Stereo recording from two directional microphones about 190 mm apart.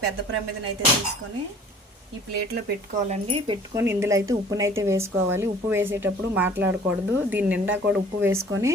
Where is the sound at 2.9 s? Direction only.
35° right (ahead or behind).